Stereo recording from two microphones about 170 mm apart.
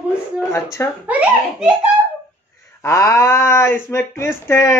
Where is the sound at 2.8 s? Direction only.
15° left (ahead or behind).